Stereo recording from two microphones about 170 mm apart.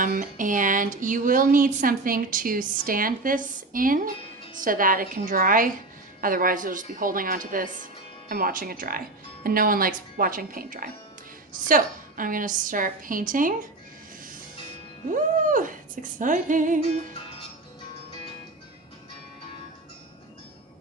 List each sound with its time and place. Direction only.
0.0 s speech: 50° right (ahead or behind)
15.1 s speech: 50° right (ahead or behind)